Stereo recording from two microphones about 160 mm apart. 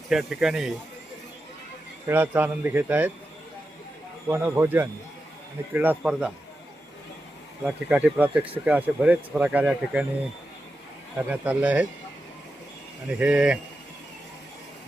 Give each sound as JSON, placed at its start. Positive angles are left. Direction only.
{"t": 0.1, "sound": "speech", "side_deg": -5}
{"t": 2.0, "sound": "speech", "side_deg": -10}
{"t": 4.3, "sound": "speech", "side_deg": -15}
{"t": 7.6, "sound": "speech", "side_deg": -10}
{"t": 11.3, "sound": "speech", "side_deg": -10}
{"t": 13.1, "sound": "speech", "side_deg": -10}